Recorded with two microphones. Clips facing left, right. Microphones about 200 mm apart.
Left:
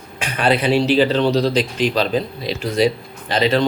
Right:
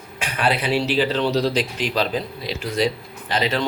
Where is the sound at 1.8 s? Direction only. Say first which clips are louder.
Left 6 dB; 25° left (ahead or behind).